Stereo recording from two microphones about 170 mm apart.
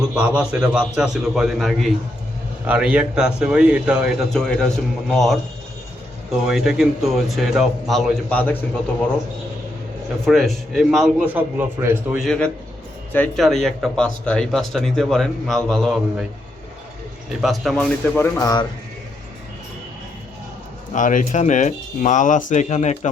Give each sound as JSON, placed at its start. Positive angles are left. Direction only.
{"t": 0.1, "sound": "speech", "side_deg": -5}
{"t": 6.4, "sound": "speech", "side_deg": -5}
{"t": 10.2, "sound": "speech", "side_deg": 0}
{"t": 12.2, "sound": "speech", "side_deg": 5}
{"t": 17.4, "sound": "speech", "side_deg": 0}
{"t": 18.3, "sound": "a man's voice", "side_deg": 20}
{"t": 20.9, "sound": "speech", "side_deg": 50}